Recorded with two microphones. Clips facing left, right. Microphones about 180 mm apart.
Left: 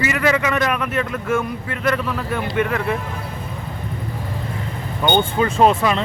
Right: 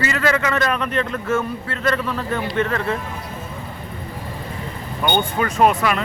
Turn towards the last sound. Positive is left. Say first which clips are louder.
# left 1 dB
turn(degrees=25)  # may be behind; listen again after turning